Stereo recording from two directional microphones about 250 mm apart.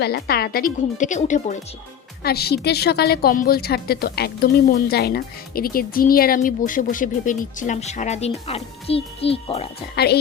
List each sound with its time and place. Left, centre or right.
0.0 s a woman's voice: left
9.9 s a woman's voice: left